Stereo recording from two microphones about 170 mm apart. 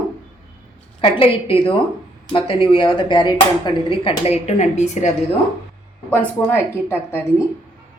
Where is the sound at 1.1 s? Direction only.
30° left (ahead or behind).